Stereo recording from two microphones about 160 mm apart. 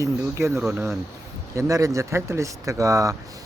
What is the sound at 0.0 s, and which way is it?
Speech, 15° right (ahead or behind).